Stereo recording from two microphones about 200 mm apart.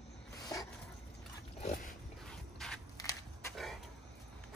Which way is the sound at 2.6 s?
Centre (ahead or behind).